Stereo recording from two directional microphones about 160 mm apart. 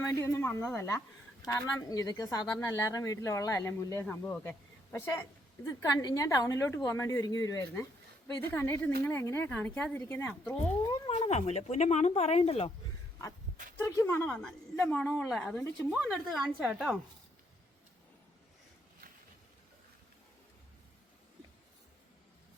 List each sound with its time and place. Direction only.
0.1 s a woman's voice: 15° left (ahead or behind)
10.8 s speech: 25° left (ahead or behind)
11.2 s speech: 40° left (ahead or behind)
13.7 s a woman's voice: 15° left (ahead or behind)
16.0 s a woman's voice: centre (ahead or behind)